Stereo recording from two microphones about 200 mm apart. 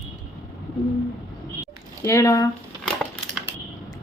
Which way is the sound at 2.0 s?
15° left (ahead or behind).